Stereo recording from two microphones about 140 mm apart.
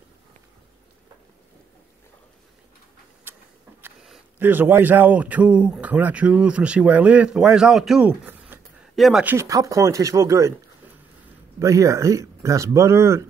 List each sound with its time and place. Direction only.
4.4 s a man's voice: 15° right (ahead or behind)
8.9 s speech: centre (ahead or behind)
9.2 s speech: 15° right (ahead or behind)
11.6 s speech: 20° right (ahead or behind)